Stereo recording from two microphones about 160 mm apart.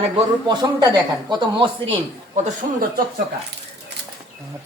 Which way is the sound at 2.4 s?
60° right (ahead or behind).